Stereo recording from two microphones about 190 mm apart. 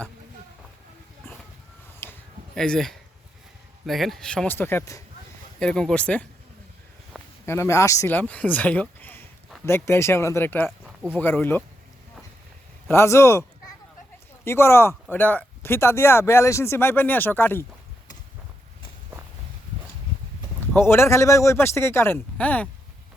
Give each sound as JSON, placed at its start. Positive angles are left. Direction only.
{"t": 2.0, "sound": "a sound", "side_deg": 10}
{"t": 2.6, "sound": "speech", "side_deg": 5}
{"t": 7.4, "sound": "speech", "side_deg": 15}
{"t": 10.8, "sound": "a sound", "side_deg": -5}
{"t": 11.2, "sound": "speech", "side_deg": 10}
{"t": 12.9, "sound": "speech", "side_deg": 15}
{"t": 14.4, "sound": "speech", "side_deg": 15}
{"t": 20.7, "sound": "speech", "side_deg": 10}